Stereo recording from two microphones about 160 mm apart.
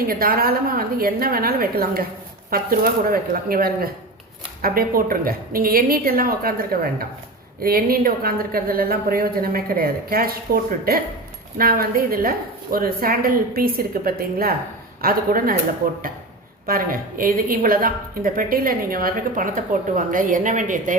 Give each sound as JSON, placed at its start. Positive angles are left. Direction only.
{"t": 0.0, "sound": "a woman's voice", "side_deg": -65}
{"t": 16.6, "sound": "a woman's voice", "side_deg": -65}